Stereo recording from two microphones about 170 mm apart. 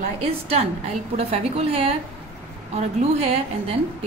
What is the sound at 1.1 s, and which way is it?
A woman's voice, 35° right (ahead or behind).